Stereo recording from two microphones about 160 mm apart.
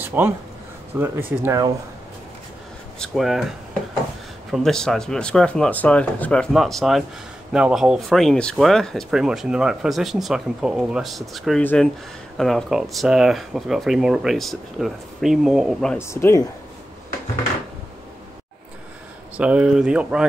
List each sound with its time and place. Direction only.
0.0 s a sound: 15° right (ahead or behind)
0.9 s speech: 15° right (ahead or behind)
3.0 s speech: centre (ahead or behind)
16.0 s speech: 15° left (ahead or behind)
19.3 s speech: 10° right (ahead or behind)